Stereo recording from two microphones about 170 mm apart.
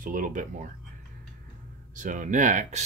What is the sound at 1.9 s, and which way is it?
Speech, 50° right (ahead or behind).